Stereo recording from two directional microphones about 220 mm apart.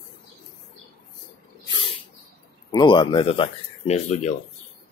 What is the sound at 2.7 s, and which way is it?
Speech, 20° left (ahead or behind).